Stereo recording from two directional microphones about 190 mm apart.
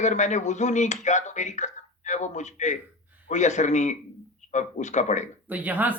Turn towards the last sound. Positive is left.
turn(degrees=-10)  # may be behind; listen again after turning